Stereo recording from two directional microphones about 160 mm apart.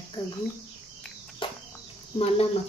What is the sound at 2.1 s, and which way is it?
Speech, 40° left (ahead or behind).